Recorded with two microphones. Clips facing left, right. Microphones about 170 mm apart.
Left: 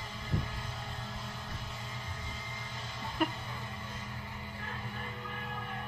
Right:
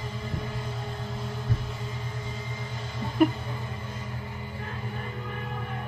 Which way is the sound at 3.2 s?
15° right (ahead or behind).